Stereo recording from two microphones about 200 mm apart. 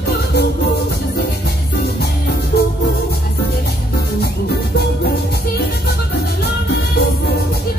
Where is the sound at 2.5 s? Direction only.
55° left (ahead or behind).